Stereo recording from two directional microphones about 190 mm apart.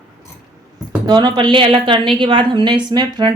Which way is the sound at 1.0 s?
20° right (ahead or behind).